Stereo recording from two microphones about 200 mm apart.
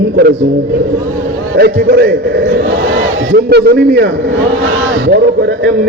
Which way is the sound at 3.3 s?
55° right (ahead or behind).